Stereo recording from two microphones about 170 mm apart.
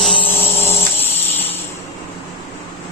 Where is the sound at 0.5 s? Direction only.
15° left (ahead or behind).